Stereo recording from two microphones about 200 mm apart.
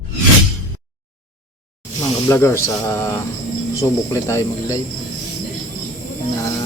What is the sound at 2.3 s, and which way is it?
Speech, 15° left (ahead or behind).